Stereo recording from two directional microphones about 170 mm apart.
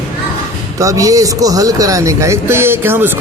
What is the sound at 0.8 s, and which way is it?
Speech, 20° right (ahead or behind).